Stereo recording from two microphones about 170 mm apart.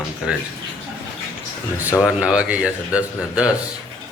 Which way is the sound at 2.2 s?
5° right (ahead or behind).